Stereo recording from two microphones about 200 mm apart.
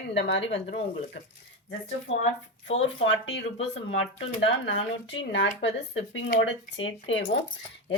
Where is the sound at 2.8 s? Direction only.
65° left (ahead or behind).